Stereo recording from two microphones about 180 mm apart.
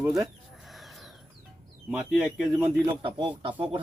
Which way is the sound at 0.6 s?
Centre (ahead or behind).